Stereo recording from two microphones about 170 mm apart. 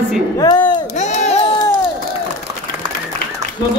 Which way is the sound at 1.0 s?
40° left (ahead or behind).